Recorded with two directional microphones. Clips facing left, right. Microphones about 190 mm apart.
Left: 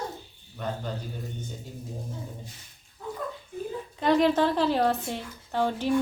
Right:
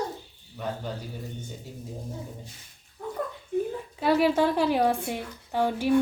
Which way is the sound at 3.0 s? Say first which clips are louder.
Right 1 dB; 50° right (ahead or behind).